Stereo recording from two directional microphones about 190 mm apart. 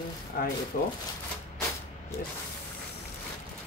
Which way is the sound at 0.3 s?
50° left (ahead or behind).